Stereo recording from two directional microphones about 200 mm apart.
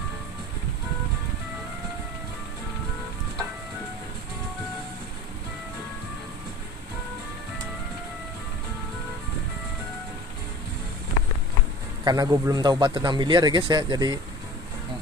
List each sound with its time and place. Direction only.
12.0 s a man's voice: 20° right (ahead or behind)